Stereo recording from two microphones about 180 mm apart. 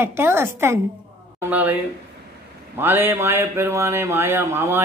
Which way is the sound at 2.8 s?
10° right (ahead or behind).